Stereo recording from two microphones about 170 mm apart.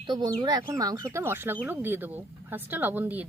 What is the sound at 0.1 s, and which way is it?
Speech, 25° right (ahead or behind).